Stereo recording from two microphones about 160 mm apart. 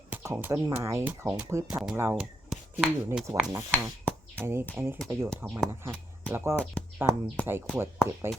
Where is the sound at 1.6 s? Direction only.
5° right (ahead or behind).